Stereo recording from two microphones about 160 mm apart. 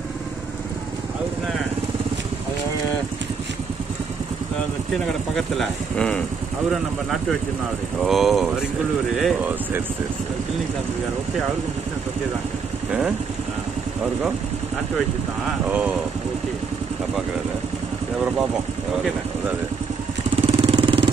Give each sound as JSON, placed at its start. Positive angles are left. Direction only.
{"t": 5.3, "sound": "speech", "side_deg": 5}
{"t": 8.0, "sound": "speech", "side_deg": 0}
{"t": 15.7, "sound": "speech", "side_deg": -10}
{"t": 20.3, "sound": "vehicle", "side_deg": -35}